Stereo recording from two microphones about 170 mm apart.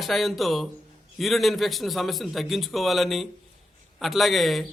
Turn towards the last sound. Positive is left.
turn(degrees=0)  # may be behind; listen again after turning